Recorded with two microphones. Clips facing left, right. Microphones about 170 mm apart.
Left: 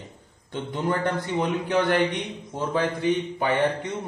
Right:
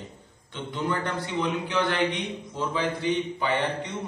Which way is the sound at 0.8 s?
45° left (ahead or behind).